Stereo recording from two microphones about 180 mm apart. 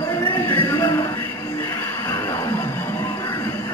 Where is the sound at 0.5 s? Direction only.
10° left (ahead or behind).